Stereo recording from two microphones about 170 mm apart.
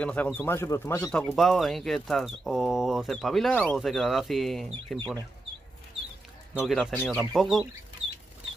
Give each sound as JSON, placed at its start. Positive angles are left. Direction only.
{"t": 0.0, "sound": "speech", "side_deg": 10}
{"t": 6.5, "sound": "speech", "side_deg": 0}